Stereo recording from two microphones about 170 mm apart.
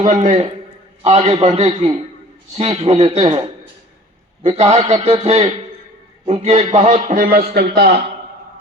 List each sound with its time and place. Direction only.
0.0 s a man's voice: 45° right (ahead or behind)
4.4 s a man's voice: 40° right (ahead or behind); by 7.7 s 65° right (ahead or behind)
7.8 s a man's voice: 75° right (ahead or behind)